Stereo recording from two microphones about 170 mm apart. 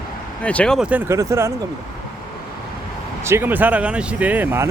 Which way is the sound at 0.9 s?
10° right (ahead or behind).